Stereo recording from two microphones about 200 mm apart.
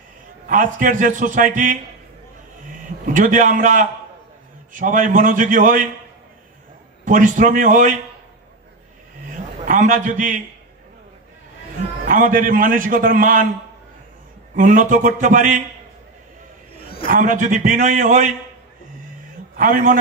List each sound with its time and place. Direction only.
0.5 s a man's voice: 40° right (ahead or behind)
3.1 s a man's voice: 40° right (ahead or behind)
7.1 s a man's voice: 40° right (ahead or behind)
9.3 s a sound: 40° right (ahead or behind)
12.1 s a man's voice: 45° right (ahead or behind)
14.5 s a man's voice: 40° right (ahead or behind)
17.1 s a man's voice: 40° right (ahead or behind)
19.5 s a man's voice: 40° right (ahead or behind)